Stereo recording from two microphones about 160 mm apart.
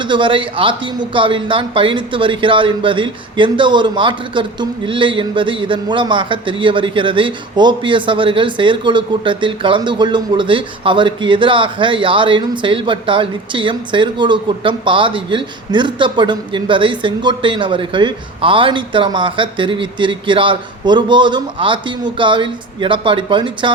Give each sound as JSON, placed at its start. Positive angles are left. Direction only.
{"t": 0.0, "sound": "speech", "side_deg": -30}